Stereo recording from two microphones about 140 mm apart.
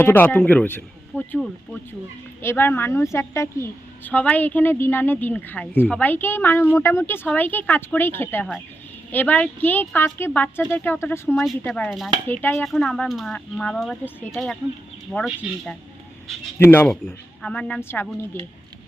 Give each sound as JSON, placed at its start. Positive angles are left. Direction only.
{"t": 0.0, "sound": "a woman's voice", "side_deg": 15}
{"t": 2.4, "sound": "a woman's voice", "side_deg": 15}
{"t": 11.9, "sound": "speech", "side_deg": 0}
{"t": 12.3, "sound": "a woman's voice", "side_deg": 15}
{"t": 12.5, "sound": "speech", "side_deg": 5}
{"t": 15.1, "sound": "a woman's voice", "side_deg": 15}
{"t": 16.6, "sound": "a woman's voice", "side_deg": 15}